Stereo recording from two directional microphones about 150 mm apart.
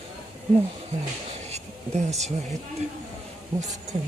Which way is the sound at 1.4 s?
45° right (ahead or behind).